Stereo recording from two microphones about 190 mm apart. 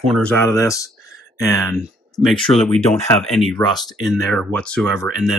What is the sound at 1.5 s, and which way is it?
Speech, centre (ahead or behind).